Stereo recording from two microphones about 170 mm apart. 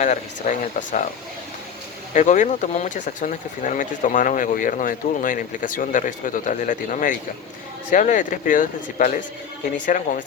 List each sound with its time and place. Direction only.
0.0 s speech: 45° left (ahead or behind)
2.1 s speech: 45° left (ahead or behind)